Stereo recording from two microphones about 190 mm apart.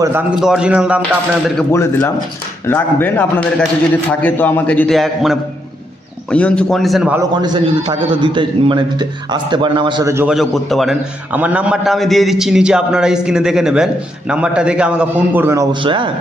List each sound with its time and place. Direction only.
0.0 s a man's voice: 10° right (ahead or behind)
1.7 s a man's voice: 15° left (ahead or behind); by 7.2 s centre (ahead or behind)
7.2 s a man's voice: 20° right (ahead or behind)
10.2 s a man's voice: centre (ahead or behind)
15.7 s a man's voice: 25° right (ahead or behind)